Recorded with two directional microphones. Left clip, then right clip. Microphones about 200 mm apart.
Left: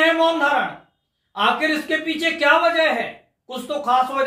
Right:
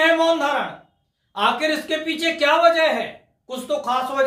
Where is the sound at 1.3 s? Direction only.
15° right (ahead or behind).